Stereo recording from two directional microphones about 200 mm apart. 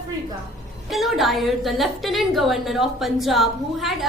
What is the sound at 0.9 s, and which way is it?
A woman's voice, centre (ahead or behind).